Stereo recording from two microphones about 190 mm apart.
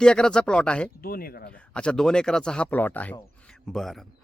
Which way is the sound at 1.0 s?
50° left (ahead or behind).